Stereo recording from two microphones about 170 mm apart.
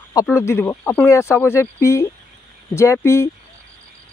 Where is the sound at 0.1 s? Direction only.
20° left (ahead or behind).